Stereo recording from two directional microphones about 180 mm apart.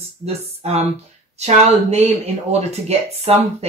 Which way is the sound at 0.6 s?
35° right (ahead or behind).